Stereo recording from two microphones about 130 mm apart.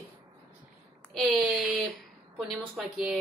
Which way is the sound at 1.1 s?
Centre (ahead or behind).